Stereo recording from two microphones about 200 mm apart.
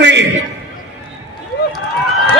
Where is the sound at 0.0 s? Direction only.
65° right (ahead or behind).